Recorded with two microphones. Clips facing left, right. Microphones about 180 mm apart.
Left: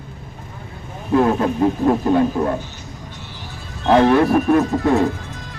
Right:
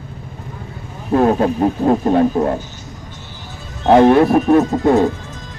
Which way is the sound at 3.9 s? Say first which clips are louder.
Right 4 dB; 30° right (ahead or behind).